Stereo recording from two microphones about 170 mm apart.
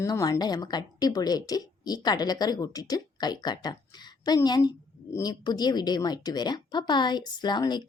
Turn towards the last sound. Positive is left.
turn(degrees=25)  # may be behind; listen again after turning